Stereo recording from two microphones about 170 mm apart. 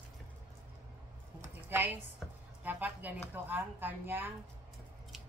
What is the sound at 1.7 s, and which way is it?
A woman's voice, 10° right (ahead or behind).